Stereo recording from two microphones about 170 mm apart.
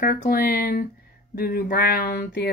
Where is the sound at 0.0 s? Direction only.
60° left (ahead or behind).